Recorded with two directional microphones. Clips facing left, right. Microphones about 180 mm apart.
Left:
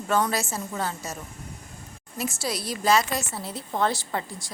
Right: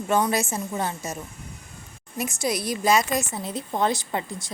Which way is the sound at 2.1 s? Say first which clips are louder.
Right 3 dB; 15° right (ahead or behind).